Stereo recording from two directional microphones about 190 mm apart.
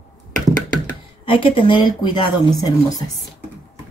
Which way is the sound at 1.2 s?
30° left (ahead or behind).